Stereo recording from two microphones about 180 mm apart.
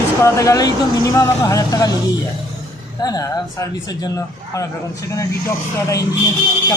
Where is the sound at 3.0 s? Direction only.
20° left (ahead or behind).